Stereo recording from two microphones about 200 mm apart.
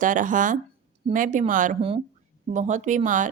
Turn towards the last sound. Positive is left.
turn(degrees=-40)  # may be behind; listen again after turning